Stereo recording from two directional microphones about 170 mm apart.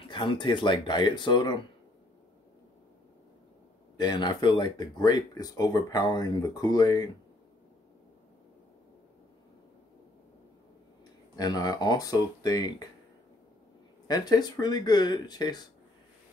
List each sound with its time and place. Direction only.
0.0 s speech: 30° left (ahead or behind)
3.9 s speech: 25° left (ahead or behind)
11.3 s speech: 25° left (ahead or behind)
14.0 s speech: 25° left (ahead or behind)